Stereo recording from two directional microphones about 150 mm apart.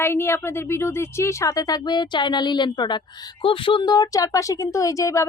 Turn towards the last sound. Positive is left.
turn(degrees=20)  # may be behind; listen again after turning